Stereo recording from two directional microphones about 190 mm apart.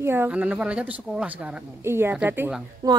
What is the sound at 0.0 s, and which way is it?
Speech, 10° right (ahead or behind).